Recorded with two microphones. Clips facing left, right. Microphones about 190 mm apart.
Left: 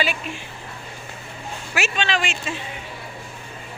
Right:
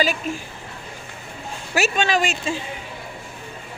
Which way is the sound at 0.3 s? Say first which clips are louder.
Right 6 dB; 45° right (ahead or behind).